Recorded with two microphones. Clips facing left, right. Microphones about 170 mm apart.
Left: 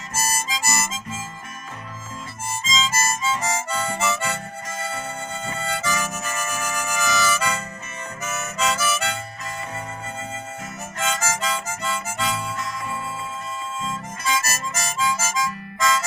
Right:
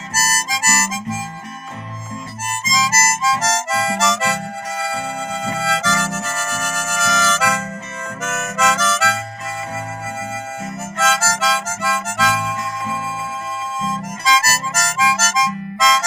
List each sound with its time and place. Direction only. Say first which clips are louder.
0.1 s harmonica: right 3 dB; 90° right
2.4 s harmonica: right 4 dB; 90° right
11.0 s harmonica: right 6 dB; 90° right